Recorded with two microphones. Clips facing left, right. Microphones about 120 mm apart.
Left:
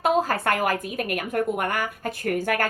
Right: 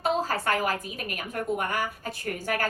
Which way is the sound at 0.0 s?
55° left (ahead or behind).